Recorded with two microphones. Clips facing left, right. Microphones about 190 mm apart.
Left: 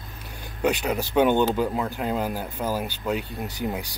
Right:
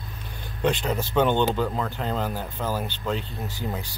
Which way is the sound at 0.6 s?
10° left (ahead or behind).